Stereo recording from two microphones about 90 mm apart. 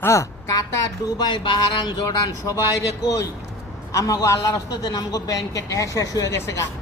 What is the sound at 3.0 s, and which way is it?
A man's voice, 35° left (ahead or behind).